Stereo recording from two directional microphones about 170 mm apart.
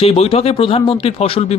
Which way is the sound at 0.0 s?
35° left (ahead or behind).